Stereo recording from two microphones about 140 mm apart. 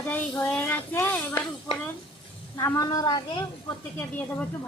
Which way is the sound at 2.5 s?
25° left (ahead or behind).